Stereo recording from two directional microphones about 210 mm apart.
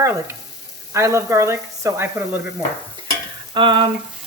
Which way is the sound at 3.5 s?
20° right (ahead or behind).